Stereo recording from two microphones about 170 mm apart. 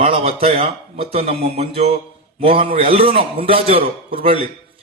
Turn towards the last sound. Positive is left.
turn(degrees=-35)  # may be behind; listen again after turning